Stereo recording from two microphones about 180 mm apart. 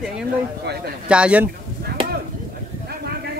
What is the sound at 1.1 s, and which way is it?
Speech, 5° right (ahead or behind).